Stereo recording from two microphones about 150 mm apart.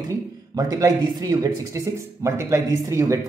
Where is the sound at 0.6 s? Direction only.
20° right (ahead or behind).